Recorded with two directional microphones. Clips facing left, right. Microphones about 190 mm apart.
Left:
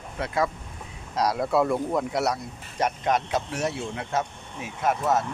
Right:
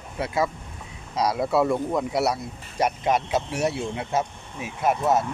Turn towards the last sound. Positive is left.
turn(degrees=-10)  # may be behind; listen again after turning